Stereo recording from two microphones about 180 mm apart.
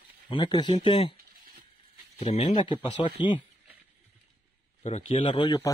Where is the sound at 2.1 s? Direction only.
35° left (ahead or behind).